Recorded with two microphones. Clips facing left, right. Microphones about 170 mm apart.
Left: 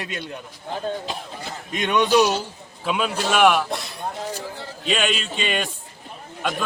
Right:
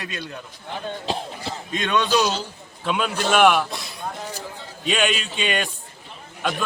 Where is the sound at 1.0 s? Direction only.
30° right (ahead or behind).